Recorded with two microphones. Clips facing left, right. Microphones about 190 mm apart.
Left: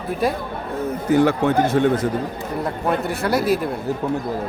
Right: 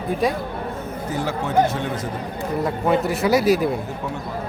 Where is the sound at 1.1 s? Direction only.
60° left (ahead or behind).